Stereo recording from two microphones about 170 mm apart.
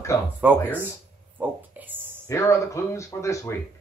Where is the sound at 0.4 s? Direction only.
10° right (ahead or behind).